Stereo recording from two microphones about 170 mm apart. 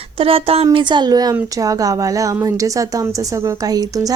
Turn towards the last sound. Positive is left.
turn(degrees=-20)  # may be behind; listen again after turning